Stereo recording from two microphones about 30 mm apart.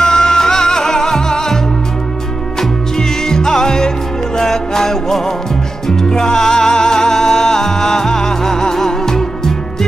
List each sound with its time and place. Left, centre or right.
0.0 s music: centre
3.0 s music: centre